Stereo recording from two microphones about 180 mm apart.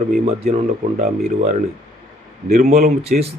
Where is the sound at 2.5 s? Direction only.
40° right (ahead or behind).